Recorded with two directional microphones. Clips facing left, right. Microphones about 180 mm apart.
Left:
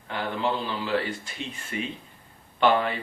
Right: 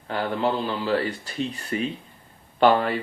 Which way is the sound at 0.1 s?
40° right (ahead or behind).